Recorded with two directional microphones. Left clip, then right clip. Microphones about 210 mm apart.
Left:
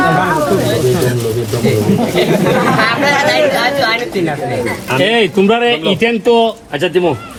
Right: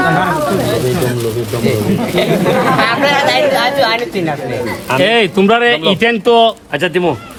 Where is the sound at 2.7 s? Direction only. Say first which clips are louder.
Even; 30° right (ahead or behind).